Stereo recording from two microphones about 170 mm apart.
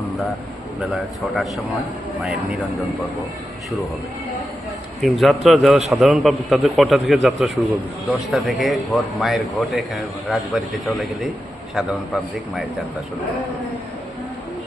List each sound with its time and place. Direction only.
0.9 s speech: centre (ahead or behind)
5.0 s speech: centre (ahead or behind)